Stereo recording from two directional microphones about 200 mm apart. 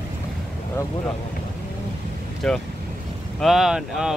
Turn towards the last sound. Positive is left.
turn(degrees=0)  # may be behind; listen again after turning